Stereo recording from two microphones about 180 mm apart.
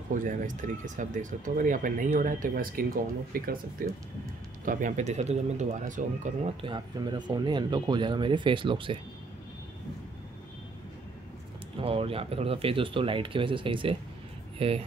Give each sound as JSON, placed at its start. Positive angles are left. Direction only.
{"t": 0.1, "sound": "speech", "side_deg": -45}
{"t": 6.6, "sound": "speech", "side_deg": -25}
{"t": 11.8, "sound": "speech", "side_deg": -30}